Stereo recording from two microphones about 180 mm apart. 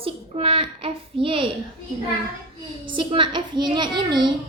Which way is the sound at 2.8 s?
25° right (ahead or behind).